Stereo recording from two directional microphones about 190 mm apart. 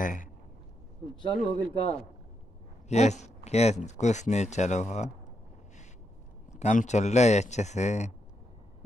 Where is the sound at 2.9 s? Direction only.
35° left (ahead or behind).